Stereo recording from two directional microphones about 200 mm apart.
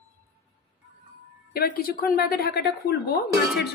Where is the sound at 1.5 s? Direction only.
50° left (ahead or behind).